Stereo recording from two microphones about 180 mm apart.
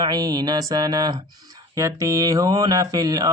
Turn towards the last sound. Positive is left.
turn(degrees=-20)  # may be behind; listen again after turning